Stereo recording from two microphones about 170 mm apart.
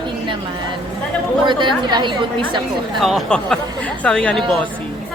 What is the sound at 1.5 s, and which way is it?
A woman's voice, 25° right (ahead or behind).